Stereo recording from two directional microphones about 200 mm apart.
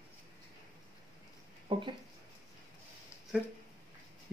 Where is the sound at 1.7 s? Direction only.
25° right (ahead or behind).